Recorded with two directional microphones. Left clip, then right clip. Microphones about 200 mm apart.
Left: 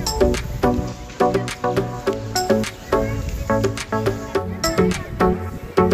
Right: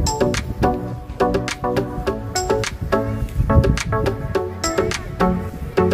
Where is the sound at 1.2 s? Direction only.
10° right (ahead or behind).